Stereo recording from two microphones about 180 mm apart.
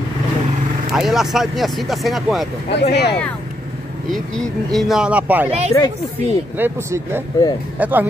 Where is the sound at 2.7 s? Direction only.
70° left (ahead or behind).